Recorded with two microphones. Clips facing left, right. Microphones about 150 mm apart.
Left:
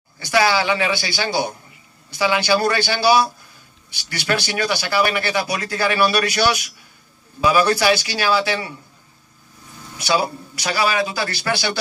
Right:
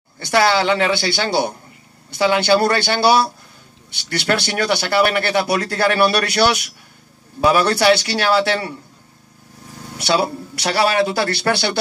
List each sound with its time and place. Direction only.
0.3 s speech: 60° right (ahead or behind)
9.8 s speech: 65° right (ahead or behind)